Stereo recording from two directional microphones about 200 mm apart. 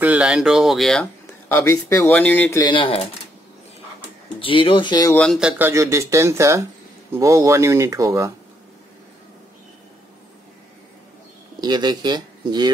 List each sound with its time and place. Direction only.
0.0 s speech: 5° right (ahead or behind)
1.5 s speech: 15° left (ahead or behind)
2.6 s speech: 25° left (ahead or behind)
4.4 s speech: 25° left (ahead or behind)
5.1 s speech: centre (ahead or behind)
5.6 s speech: 15° right (ahead or behind)
11.6 s speech: 20° right (ahead or behind)